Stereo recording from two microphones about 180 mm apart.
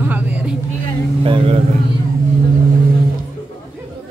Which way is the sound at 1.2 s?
30° right (ahead or behind).